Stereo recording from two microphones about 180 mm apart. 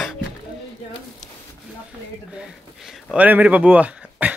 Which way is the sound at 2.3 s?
5° right (ahead or behind).